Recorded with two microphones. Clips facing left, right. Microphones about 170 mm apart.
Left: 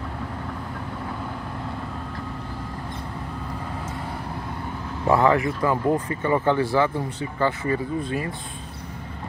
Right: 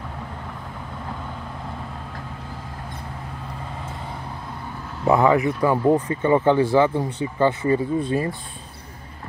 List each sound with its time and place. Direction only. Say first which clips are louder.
5.0 s speech: right 2 dB; 15° right (ahead or behind)